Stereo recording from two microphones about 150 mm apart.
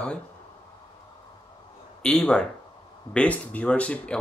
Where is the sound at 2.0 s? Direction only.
5° left (ahead or behind).